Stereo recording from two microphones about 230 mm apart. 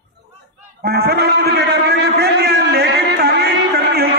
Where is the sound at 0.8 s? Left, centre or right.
Right.